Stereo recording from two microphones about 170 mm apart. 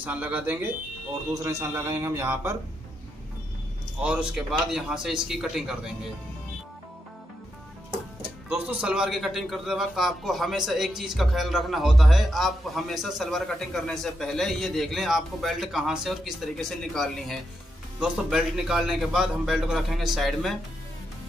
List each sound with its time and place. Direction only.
0.0 s a man's voice: 10° right (ahead or behind)
4.0 s a man's voice: 5° right (ahead or behind)
8.5 s a man's voice: 5° right (ahead or behind)